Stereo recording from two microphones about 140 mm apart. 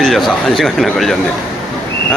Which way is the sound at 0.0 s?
Centre (ahead or behind).